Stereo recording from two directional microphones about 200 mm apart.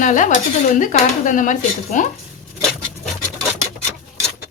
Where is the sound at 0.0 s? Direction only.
40° left (ahead or behind).